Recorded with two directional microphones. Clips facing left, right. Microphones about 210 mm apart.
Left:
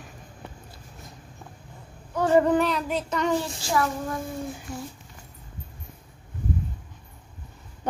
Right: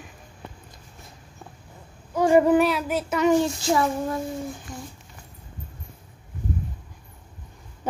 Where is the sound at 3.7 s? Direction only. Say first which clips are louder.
Right 1 dB; 25° right (ahead or behind).